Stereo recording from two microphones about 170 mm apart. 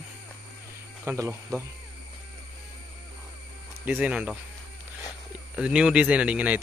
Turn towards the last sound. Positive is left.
turn(degrees=-10)  # may be behind; listen again after turning